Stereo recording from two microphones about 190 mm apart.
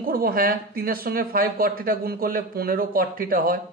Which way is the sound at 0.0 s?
50° right (ahead or behind).